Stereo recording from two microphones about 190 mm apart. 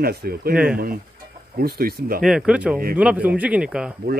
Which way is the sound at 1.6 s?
50° right (ahead or behind).